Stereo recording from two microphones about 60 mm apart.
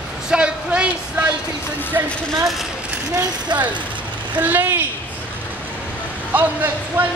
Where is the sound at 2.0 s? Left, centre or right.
Right.